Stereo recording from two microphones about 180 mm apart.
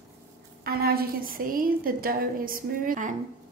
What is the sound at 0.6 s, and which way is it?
A woman's voice, 60° right (ahead or behind).